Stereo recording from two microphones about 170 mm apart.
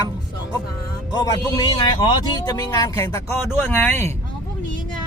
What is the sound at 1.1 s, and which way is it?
A man's voice, 20° left (ahead or behind).